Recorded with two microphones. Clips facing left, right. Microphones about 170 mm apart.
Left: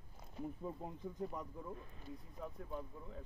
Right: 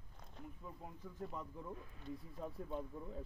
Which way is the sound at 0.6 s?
30° left (ahead or behind).